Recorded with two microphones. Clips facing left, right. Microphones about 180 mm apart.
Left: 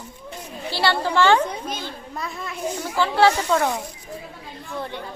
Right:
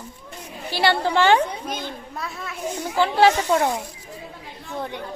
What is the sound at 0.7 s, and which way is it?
A woman's voice, 20° right (ahead or behind).